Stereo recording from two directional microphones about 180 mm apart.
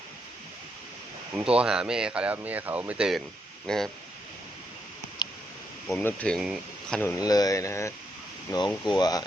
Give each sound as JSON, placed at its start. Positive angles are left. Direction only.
{"t": 1.4, "sound": "speech", "side_deg": -5}
{"t": 5.2, "sound": "a sound", "side_deg": 25}
{"t": 6.0, "sound": "speech", "side_deg": 10}
{"t": 7.0, "sound": "speech", "side_deg": 20}
{"t": 8.7, "sound": "speech", "side_deg": 0}
{"t": 9.0, "sound": "speech", "side_deg": 20}